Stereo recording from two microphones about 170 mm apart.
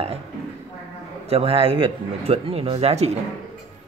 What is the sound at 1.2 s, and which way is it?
Speech, 35° right (ahead or behind).